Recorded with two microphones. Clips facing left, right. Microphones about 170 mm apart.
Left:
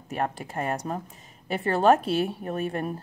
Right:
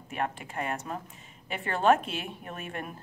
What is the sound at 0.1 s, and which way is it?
A woman's voice, 35° left (ahead or behind).